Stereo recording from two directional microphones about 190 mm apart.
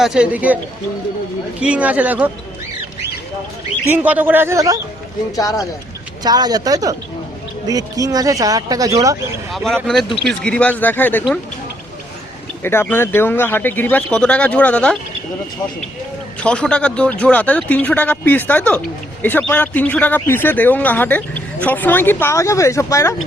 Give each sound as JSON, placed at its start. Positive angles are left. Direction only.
{"t": 0.0, "sound": "speech", "side_deg": -5}
{"t": 1.6, "sound": "speech", "side_deg": -5}
{"t": 3.8, "sound": "speech", "side_deg": -10}
{"t": 5.4, "sound": "speech", "side_deg": 20}
{"t": 6.2, "sound": "speech", "side_deg": -20}
{"t": 9.5, "sound": "a man's voice", "side_deg": 0}
{"t": 12.6, "sound": "a man's voice", "side_deg": 10}
{"t": 16.4, "sound": "a man's voice", "side_deg": 5}